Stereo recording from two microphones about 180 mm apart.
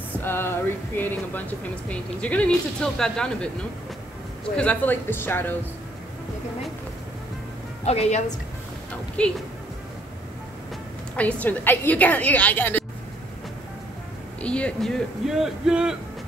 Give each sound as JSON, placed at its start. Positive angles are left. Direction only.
{"t": 0.2, "sound": "a woman's voice", "side_deg": 15}
{"t": 4.6, "sound": "a woman's voice", "side_deg": 10}
{"t": 7.8, "sound": "a woman's voice", "side_deg": 35}
{"t": 8.9, "sound": "a woman's voice", "side_deg": 5}
{"t": 11.1, "sound": "a woman's voice", "side_deg": 10}
{"t": 14.4, "sound": "speech", "side_deg": 5}